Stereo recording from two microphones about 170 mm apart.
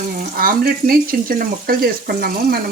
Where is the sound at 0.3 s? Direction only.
60° right (ahead or behind).